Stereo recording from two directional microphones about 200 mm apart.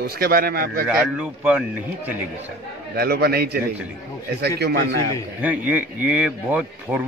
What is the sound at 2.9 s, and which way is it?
A man's voice, 50° right (ahead or behind).